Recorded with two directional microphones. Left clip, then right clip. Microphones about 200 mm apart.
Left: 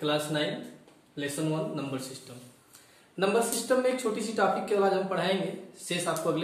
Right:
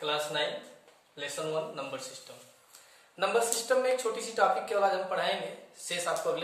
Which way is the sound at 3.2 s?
10° right (ahead or behind).